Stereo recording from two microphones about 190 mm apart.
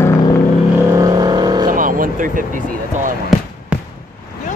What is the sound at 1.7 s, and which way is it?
Speech, 45° right (ahead or behind).